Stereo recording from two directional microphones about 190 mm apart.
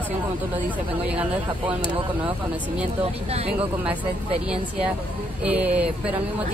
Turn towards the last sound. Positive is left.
turn(degrees=-5)  # may be behind; listen again after turning